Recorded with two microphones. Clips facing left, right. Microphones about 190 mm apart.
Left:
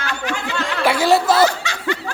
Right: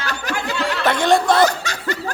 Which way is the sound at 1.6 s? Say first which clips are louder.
Left 2 dB; 40° right (ahead or behind).